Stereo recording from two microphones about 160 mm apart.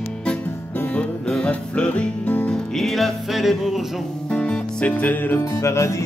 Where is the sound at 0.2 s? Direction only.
5° left (ahead or behind).